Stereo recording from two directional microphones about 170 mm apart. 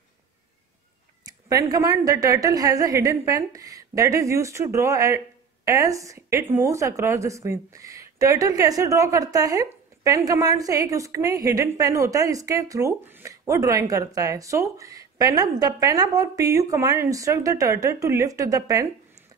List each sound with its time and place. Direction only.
1.2 s speech: 20° right (ahead or behind)